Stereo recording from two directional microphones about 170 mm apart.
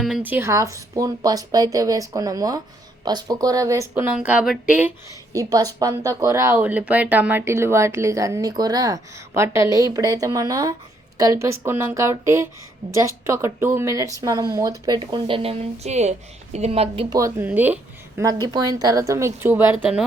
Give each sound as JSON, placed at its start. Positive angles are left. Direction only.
{"t": 0.0, "sound": "speech", "side_deg": -5}
{"t": 5.3, "sound": "speech", "side_deg": -20}
{"t": 17.2, "sound": "speech", "side_deg": -15}
{"t": 18.2, "sound": "speech", "side_deg": -20}